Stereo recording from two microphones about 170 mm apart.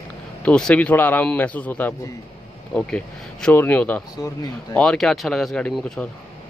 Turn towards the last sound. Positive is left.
turn(degrees=5)  # may be behind; listen again after turning